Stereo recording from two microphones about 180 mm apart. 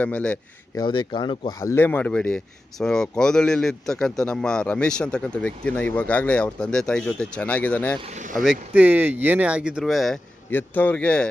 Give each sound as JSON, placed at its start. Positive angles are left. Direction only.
{"t": 0.0, "sound": "speech", "side_deg": 5}
{"t": 0.8, "sound": "speech", "side_deg": 25}
{"t": 8.0, "sound": "speech", "side_deg": -40}
{"t": 8.4, "sound": "speech", "side_deg": -5}